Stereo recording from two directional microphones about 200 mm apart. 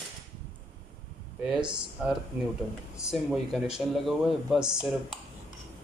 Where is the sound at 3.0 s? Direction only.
5° right (ahead or behind).